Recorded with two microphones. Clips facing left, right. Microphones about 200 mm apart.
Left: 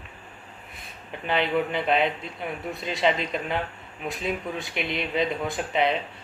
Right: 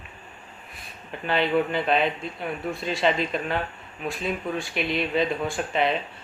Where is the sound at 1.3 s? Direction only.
20° left (ahead or behind).